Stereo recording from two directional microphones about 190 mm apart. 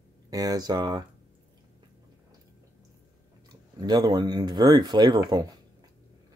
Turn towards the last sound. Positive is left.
turn(degrees=-20)  # may be behind; listen again after turning